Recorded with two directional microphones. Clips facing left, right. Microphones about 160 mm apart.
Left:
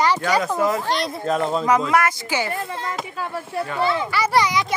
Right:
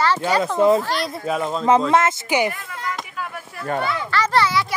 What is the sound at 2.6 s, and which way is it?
A child's voice, 30° left (ahead or behind).